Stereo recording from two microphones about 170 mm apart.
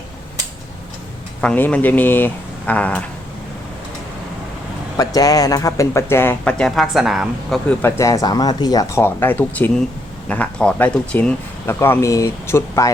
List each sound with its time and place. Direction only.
1.4 s speech: 10° left (ahead or behind)
4.9 s speech: 20° left (ahead or behind); by 7.8 s centre (ahead or behind)
7.8 s speech: 15° left (ahead or behind)